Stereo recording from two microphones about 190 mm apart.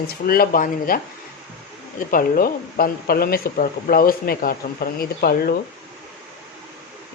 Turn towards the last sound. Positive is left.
turn(degrees=55)  # may be behind; listen again after turning